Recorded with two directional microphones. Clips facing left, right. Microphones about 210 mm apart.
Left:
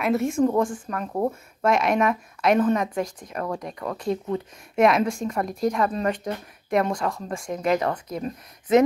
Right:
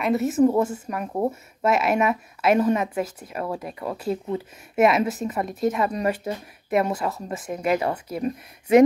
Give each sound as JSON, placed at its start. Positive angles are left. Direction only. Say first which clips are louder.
{"t": 0.0, "sound": "a woman's voice", "louder": "right 2 dB", "side_deg": 0}